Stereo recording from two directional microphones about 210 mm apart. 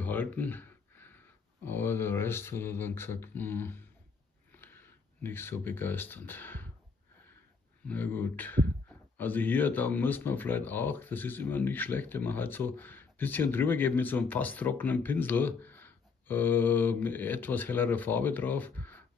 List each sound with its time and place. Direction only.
0.0 s speech: 10° left (ahead or behind)
7.8 s speech: 10° left (ahead or behind)